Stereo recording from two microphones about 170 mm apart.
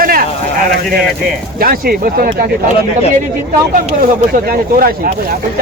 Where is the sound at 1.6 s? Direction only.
60° right (ahead or behind).